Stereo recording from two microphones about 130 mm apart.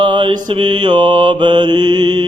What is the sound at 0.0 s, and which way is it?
Mantra, 35° right (ahead or behind).